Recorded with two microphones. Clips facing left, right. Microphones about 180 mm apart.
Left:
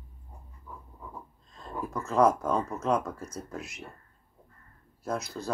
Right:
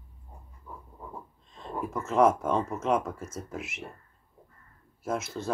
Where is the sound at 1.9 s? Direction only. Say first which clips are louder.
Right 1 dB; 25° right (ahead or behind).